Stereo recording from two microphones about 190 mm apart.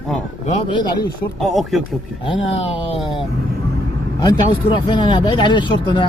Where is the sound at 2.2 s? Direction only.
30° left (ahead or behind).